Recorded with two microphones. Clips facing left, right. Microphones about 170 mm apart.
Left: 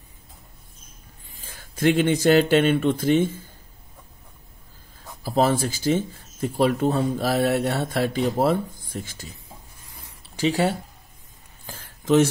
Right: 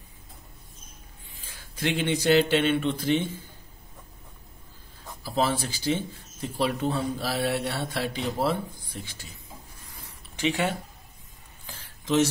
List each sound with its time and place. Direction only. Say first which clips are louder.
1.3 s speech: left 5 dB; 45° left (ahead or behind)
5.2 s speech: left 6 dB; 45° left (ahead or behind)
10.3 s speech: left 5 dB; 35° left (ahead or behind)
11.6 s a sound: left 8 dB; 45° left (ahead or behind)